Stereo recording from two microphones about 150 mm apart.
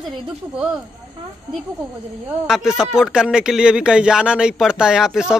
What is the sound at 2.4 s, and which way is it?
Speech, 5° right (ahead or behind).